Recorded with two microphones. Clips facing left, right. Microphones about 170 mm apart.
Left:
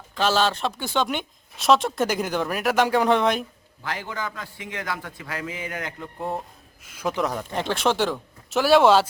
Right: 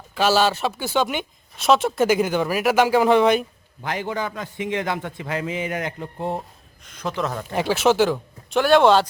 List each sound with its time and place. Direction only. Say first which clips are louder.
0.1 s speech: right 3 dB; 5° right (ahead or behind)
3.8 s a man's voice: right 5 dB; 20° right (ahead or behind)
6.8 s speech: left 1 dB; 10° left (ahead or behind)
7.5 s speech: right 7 dB; 5° right (ahead or behind)